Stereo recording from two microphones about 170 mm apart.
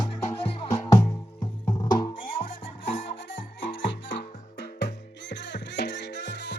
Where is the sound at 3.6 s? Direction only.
75° left (ahead or behind).